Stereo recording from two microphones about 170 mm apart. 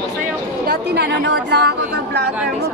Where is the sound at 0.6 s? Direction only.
70° right (ahead or behind).